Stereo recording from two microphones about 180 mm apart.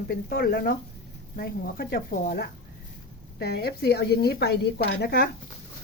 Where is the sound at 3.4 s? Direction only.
60° left (ahead or behind).